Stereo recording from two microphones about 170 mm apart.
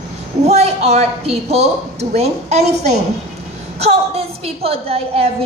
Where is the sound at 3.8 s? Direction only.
35° right (ahead or behind).